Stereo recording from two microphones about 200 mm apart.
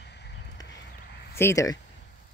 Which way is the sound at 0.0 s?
55° left (ahead or behind).